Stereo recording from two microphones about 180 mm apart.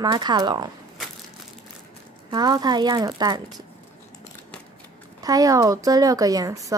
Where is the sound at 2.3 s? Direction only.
20° right (ahead or behind).